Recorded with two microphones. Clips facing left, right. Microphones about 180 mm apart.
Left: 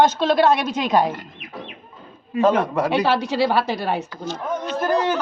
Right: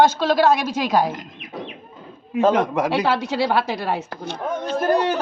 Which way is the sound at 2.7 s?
10° right (ahead or behind).